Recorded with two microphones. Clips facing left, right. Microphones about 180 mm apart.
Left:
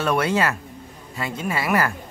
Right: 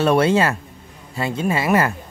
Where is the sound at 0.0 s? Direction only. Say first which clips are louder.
Right 5 dB; 30° right (ahead or behind).